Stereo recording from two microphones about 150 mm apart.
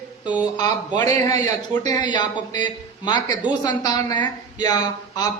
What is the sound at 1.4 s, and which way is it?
A woman's voice, 25° left (ahead or behind).